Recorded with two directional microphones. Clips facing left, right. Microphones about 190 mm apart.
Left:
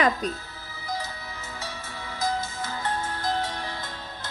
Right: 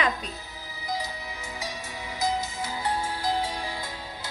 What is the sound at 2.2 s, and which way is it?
Music, 15° right (ahead or behind).